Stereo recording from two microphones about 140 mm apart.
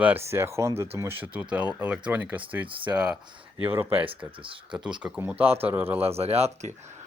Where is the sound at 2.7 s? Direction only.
35° right (ahead or behind).